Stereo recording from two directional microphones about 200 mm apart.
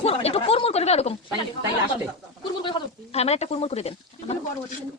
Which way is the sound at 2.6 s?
25° left (ahead or behind).